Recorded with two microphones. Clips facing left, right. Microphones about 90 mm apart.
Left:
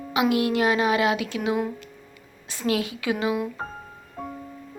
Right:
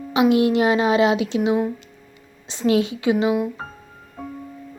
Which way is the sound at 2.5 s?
25° right (ahead or behind).